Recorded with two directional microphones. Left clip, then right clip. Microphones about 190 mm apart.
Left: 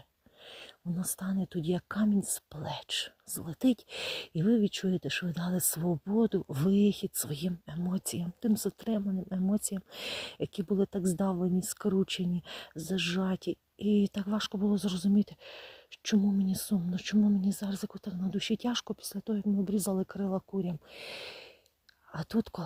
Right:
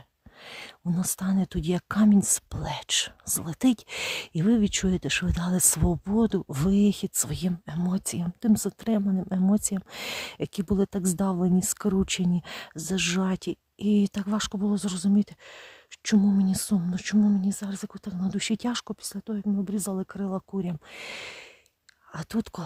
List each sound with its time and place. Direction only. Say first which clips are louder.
0.4 s speech: right 7 dB; 25° right (ahead or behind)